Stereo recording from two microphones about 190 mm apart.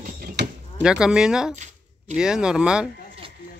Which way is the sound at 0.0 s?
50° right (ahead or behind).